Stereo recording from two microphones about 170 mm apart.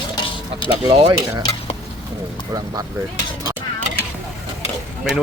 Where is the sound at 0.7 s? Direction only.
30° right (ahead or behind).